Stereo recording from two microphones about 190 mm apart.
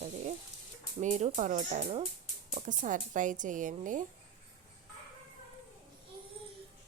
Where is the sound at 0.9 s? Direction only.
35° right (ahead or behind).